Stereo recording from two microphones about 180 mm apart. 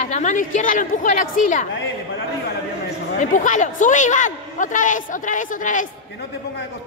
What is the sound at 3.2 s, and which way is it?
A woman's voice, 45° left (ahead or behind).